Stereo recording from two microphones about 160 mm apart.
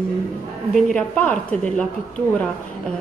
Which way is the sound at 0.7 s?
5° left (ahead or behind).